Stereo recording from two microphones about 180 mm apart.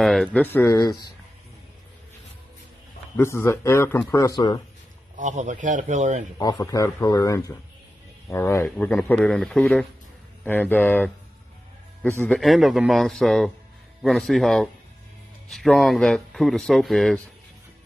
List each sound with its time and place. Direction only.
0.0 s a man's voice: 5° left (ahead or behind); by 1.1 s 20° left (ahead or behind)
3.2 s a man's voice: 15° left (ahead or behind)
5.1 s speech: 40° right (ahead or behind)
6.3 s a man's voice: 20° left (ahead or behind); by 17.2 s centre (ahead or behind)